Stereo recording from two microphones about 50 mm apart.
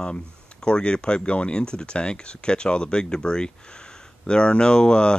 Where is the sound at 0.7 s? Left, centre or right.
Centre.